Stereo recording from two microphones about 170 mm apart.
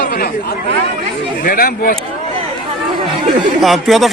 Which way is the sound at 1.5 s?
60° left (ahead or behind).